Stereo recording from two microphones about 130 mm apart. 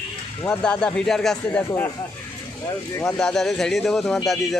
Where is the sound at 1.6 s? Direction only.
20° left (ahead or behind).